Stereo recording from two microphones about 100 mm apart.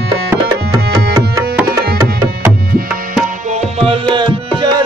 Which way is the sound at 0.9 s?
35° right (ahead or behind).